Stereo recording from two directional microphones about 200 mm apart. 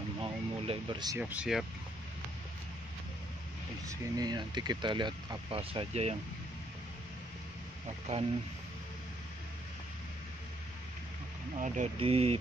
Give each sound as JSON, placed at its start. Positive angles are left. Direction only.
{"t": 0.2, "sound": "a sound", "side_deg": -25}
{"t": 1.3, "sound": "speech", "side_deg": -5}
{"t": 3.8, "sound": "speech", "side_deg": -20}
{"t": 11.5, "sound": "speech", "side_deg": -35}